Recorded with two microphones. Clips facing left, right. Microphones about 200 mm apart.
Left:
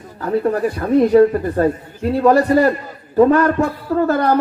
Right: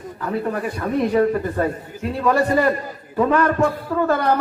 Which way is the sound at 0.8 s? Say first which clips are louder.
Left 7 dB; 35° left (ahead or behind).